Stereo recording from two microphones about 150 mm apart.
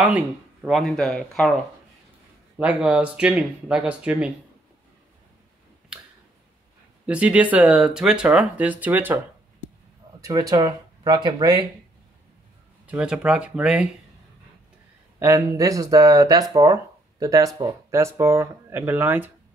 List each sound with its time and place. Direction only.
0.0 s speech: 10° right (ahead or behind)
0.7 s speech: centre (ahead or behind)
2.6 s speech: 5° right (ahead or behind)
7.1 s speech: 10° right (ahead or behind)
10.2 s speech: 25° right (ahead or behind)
12.8 s speech: 5° right (ahead or behind)
15.1 s speech: 15° right (ahead or behind)